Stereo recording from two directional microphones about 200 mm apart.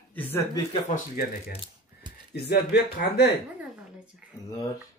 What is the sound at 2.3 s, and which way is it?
Speech, 55° left (ahead or behind).